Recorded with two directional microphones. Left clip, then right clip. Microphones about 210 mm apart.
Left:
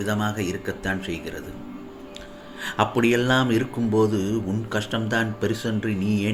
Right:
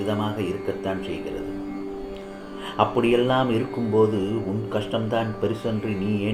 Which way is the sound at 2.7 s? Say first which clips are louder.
Right 1 dB; 40° left (ahead or behind).